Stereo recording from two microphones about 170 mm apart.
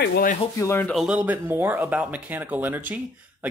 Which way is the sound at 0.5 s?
15° left (ahead or behind).